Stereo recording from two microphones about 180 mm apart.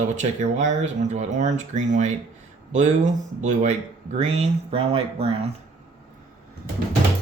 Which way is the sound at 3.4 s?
40° right (ahead or behind).